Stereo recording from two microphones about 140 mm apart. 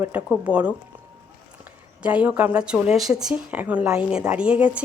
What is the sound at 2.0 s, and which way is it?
Speech, 10° right (ahead or behind).